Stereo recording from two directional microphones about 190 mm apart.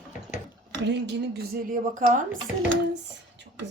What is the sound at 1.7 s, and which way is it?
Speech, 45° right (ahead or behind).